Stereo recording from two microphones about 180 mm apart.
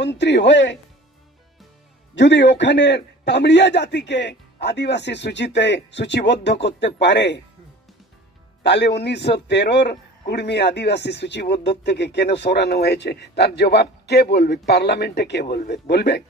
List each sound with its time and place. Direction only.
0.0 s a man's voice: 75° left (ahead or behind)
2.1 s a man's voice: 85° left
8.6 s a man's voice: 70° left (ahead or behind)